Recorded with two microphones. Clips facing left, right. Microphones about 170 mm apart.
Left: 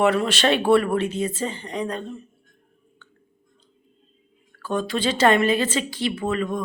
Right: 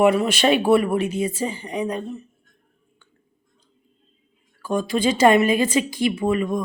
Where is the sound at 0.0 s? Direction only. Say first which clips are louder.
Right 3 dB; 10° right (ahead or behind).